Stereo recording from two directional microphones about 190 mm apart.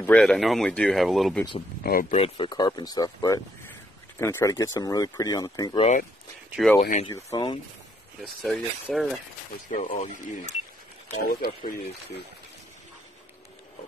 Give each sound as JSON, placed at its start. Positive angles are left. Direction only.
{"t": 0.0, "sound": "speech", "side_deg": 5}
{"t": 1.8, "sound": "speech", "side_deg": 50}
{"t": 2.0, "sound": "speech", "side_deg": 35}
{"t": 6.8, "sound": "speech", "side_deg": 35}
{"t": 7.1, "sound": "speech", "side_deg": 20}
{"t": 8.2, "sound": "speech", "side_deg": 0}
{"t": 9.7, "sound": "speech", "side_deg": 40}